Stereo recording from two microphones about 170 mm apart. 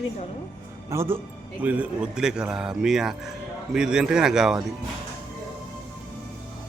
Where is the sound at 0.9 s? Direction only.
15° right (ahead or behind).